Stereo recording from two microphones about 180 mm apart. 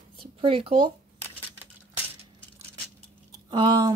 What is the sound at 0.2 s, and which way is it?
Speech, 30° right (ahead or behind).